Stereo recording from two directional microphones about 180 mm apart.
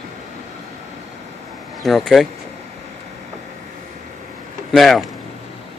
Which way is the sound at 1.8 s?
Centre (ahead or behind).